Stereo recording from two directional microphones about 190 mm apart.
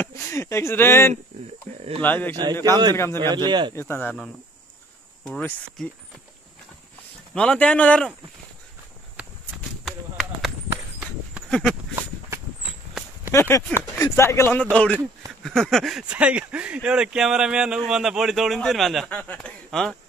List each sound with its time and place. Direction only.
0.0 s speech: 15° left (ahead or behind)
2.6 s a man's voice: 20° right (ahead or behind)
2.9 s speech: 15° left (ahead or behind)
3.4 s a man's voice: 25° right (ahead or behind)
3.7 s speech: 10° left (ahead or behind)
7.3 s speech: 5° left (ahead or behind)
9.2 s walk: 5° right (ahead or behind)
9.8 s a sound: centre (ahead or behind)
13.3 s speech: 15° left (ahead or behind)